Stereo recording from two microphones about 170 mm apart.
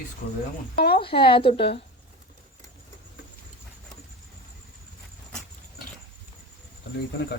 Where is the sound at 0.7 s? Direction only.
65° left (ahead or behind).